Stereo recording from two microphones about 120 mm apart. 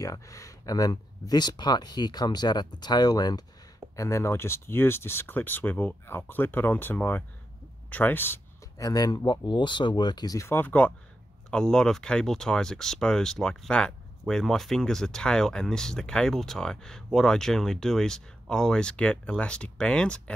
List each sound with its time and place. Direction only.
0.0 s speech: 30° left (ahead or behind); by 20.3 s 10° left (ahead or behind)